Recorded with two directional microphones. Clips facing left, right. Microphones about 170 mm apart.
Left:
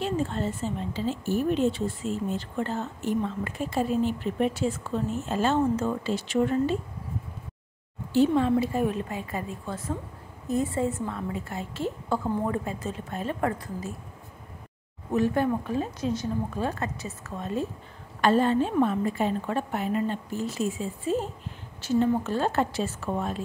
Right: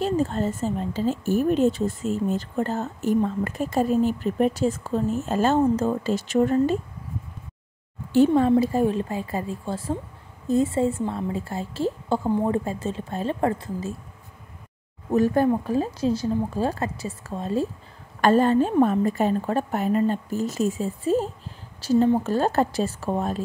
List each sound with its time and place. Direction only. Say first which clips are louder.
0.0 s speech: right 5 dB; 40° right (ahead or behind)
8.1 s a woman's voice: right 4 dB; 45° right (ahead or behind); by 13.9 s 25° right (ahead or behind)
15.1 s a woman's voice: right 4 dB; 40° right (ahead or behind)
18.2 s a woman's voice: right 4 dB; 45° right (ahead or behind)